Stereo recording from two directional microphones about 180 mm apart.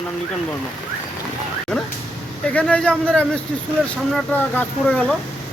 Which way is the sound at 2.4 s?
5° left (ahead or behind).